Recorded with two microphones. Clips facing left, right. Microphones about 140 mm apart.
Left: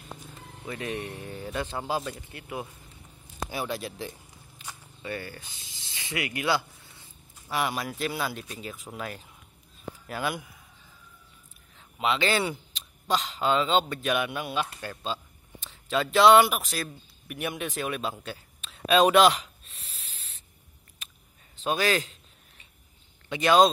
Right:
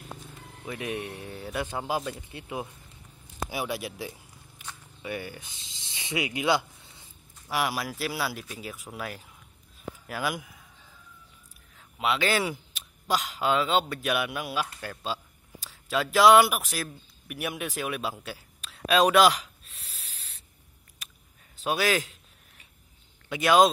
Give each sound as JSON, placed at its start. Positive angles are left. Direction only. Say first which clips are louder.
{"t": 0.7, "sound": "speech", "louder": "even", "side_deg": -10}
{"t": 3.4, "sound": "a sound", "louder": "even", "side_deg": -10}
{"t": 5.0, "sound": "speech", "louder": "right 1 dB", "side_deg": -15}
{"t": 12.0, "sound": "speech", "louder": "even", "side_deg": -5}
{"t": 21.6, "sound": "speech", "louder": "even", "side_deg": -10}
{"t": 23.2, "sound": "speech", "louder": "even", "side_deg": -5}